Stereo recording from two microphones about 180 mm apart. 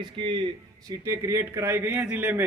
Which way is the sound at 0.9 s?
15° right (ahead or behind).